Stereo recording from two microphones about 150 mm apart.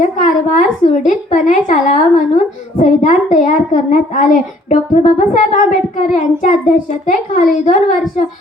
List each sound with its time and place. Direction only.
0.0 s a woman's voice: 55° left (ahead or behind)